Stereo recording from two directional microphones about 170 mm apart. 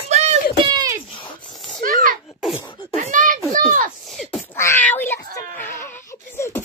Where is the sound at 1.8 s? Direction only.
55° right (ahead or behind).